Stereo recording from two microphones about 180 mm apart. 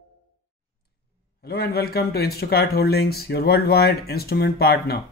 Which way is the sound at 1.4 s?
60° left (ahead or behind).